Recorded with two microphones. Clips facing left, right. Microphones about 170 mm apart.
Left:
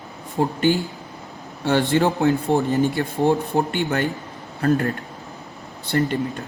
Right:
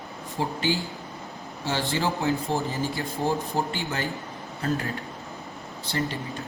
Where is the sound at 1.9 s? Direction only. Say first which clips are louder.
Left 5 dB; 65° left (ahead or behind).